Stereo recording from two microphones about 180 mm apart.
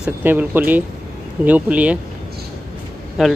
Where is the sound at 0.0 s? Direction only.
10° right (ahead or behind).